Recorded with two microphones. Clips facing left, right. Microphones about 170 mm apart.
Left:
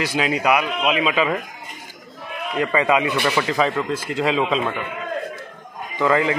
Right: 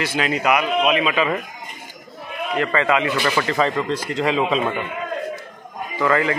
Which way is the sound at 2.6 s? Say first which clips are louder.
Left 1 dB; 15° left (ahead or behind).